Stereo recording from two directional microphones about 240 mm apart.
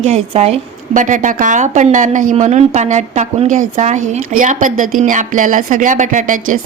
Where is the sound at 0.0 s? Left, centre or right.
Right.